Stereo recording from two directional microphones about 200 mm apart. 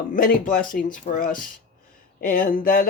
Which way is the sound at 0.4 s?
40° left (ahead or behind).